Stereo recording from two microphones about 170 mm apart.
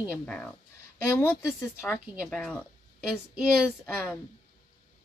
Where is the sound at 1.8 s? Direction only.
10° right (ahead or behind).